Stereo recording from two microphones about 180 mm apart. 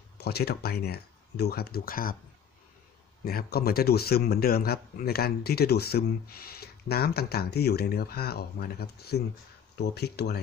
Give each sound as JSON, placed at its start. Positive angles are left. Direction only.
{"t": 0.2, "sound": "speech", "side_deg": 60}
{"t": 3.3, "sound": "speech", "side_deg": 60}